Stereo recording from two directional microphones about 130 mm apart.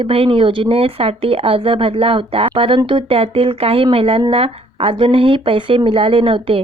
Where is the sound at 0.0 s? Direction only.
45° right (ahead or behind).